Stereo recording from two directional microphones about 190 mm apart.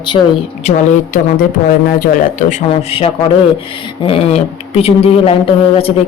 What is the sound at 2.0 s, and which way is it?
Speech, 45° left (ahead or behind).